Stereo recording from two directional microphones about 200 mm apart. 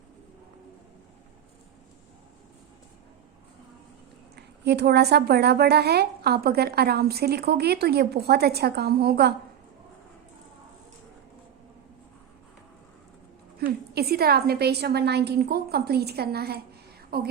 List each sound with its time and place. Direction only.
4.4 s a woman's voice: 55° right (ahead or behind)
13.9 s a woman's voice: 50° right (ahead or behind)